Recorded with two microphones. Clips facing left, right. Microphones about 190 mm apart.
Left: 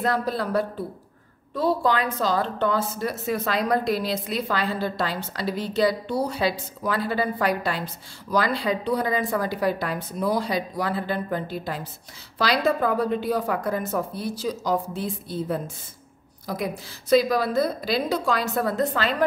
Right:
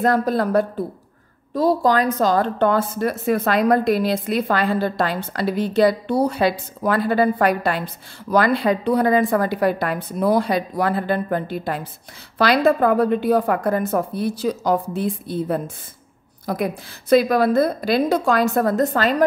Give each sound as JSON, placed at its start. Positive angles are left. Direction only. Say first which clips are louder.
{"t": 0.0, "sound": "a woman's voice", "louder": "right 6 dB", "side_deg": -50}